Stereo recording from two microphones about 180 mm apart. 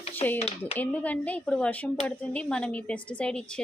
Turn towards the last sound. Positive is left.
turn(degrees=5)  # may be behind; listen again after turning